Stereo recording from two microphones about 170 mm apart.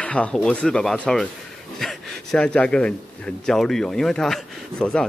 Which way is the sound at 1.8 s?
5° left (ahead or behind).